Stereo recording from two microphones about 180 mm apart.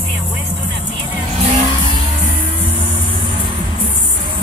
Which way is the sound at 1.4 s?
35° right (ahead or behind).